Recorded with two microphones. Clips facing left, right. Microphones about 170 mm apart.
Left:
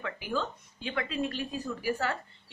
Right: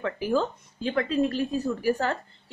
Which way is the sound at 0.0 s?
40° right (ahead or behind).